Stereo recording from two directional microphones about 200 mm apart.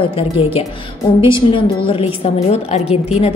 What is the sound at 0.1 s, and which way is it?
A woman's voice, 30° left (ahead or behind).